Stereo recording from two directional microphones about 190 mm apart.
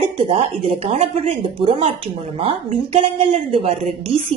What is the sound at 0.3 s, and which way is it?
Speech, 30° right (ahead or behind).